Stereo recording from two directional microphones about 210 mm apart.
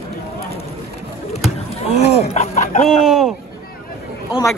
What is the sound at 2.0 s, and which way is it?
Chicken, 30° left (ahead or behind).